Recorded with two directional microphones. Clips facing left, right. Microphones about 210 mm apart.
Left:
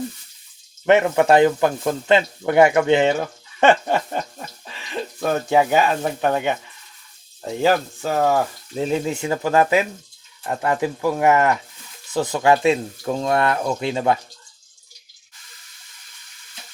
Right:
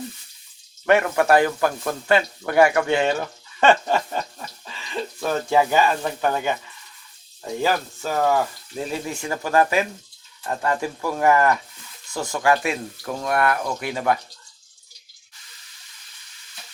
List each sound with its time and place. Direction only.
0.9 s speech: 20° left (ahead or behind)
3.6 s a sound: 20° left (ahead or behind)
5.3 s speech: 20° left (ahead or behind)
7.6 s speech: 20° left (ahead or behind)